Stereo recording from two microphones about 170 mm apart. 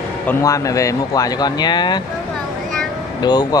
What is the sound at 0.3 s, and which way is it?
Speech, 20° left (ahead or behind).